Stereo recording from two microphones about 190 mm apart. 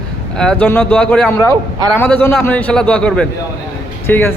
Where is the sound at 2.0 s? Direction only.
10° left (ahead or behind).